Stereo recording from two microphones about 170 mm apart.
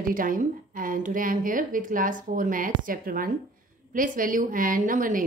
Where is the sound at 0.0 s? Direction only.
55° right (ahead or behind).